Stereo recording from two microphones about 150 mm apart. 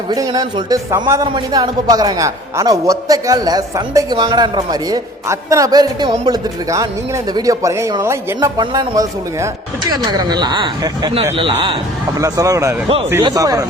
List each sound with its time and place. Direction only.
0.1 s a man's voice: 25° right (ahead or behind)
12.2 s a man's voice: 20° right (ahead or behind)